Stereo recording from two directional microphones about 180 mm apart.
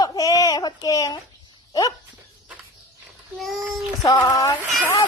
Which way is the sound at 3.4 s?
Centre (ahead or behind).